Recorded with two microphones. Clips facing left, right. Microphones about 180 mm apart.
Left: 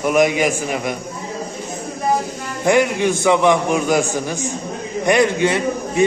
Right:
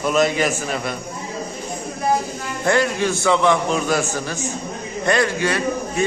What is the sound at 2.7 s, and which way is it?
A man's voice, 15° left (ahead or behind).